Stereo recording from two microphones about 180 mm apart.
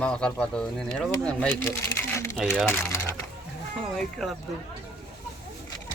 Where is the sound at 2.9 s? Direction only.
15° left (ahead or behind).